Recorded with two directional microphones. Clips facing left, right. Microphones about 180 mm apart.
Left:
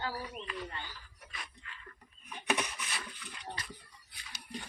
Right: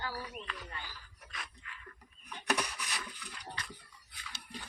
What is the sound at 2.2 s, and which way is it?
Rub, 5° left (ahead or behind).